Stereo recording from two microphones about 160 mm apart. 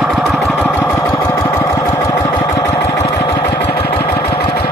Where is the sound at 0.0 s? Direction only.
Centre (ahead or behind).